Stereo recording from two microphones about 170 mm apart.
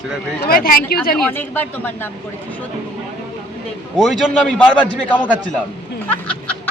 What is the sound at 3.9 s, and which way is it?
Speech, centre (ahead or behind).